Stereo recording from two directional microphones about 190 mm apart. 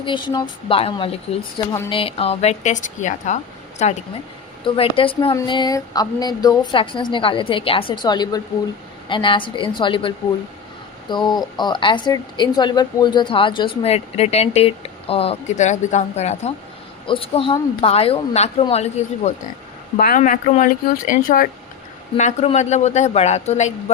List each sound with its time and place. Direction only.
0.0 s a woman's voice: 25° left (ahead or behind)
11.1 s a woman's voice: 25° left (ahead or behind)